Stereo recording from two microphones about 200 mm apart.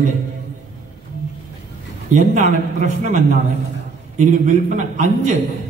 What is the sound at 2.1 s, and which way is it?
A woman's voice, 40° right (ahead or behind).